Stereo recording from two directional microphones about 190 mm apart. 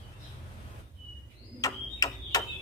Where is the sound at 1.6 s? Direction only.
20° left (ahead or behind).